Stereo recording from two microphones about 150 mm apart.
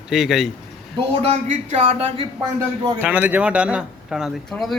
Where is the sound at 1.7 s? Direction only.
45° right (ahead or behind).